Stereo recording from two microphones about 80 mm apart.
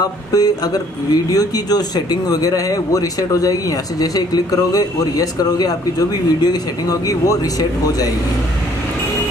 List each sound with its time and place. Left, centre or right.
0.0 s speech: left